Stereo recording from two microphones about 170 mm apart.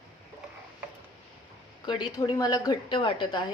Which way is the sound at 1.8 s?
25° left (ahead or behind).